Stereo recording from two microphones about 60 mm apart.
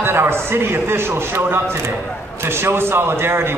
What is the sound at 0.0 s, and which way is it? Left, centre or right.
A man's voice, right.